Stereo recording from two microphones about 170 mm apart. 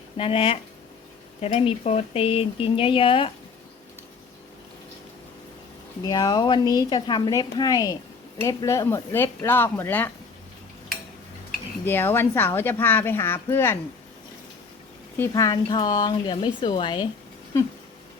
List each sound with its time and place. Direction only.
0.2 s speech: 35° left (ahead or behind)
6.1 s a woman's voice: 25° left (ahead or behind)
11.9 s a woman's voice: 10° left (ahead or behind)
15.3 s speech: 25° left (ahead or behind)
17.5 s a woman's voice: 15° left (ahead or behind)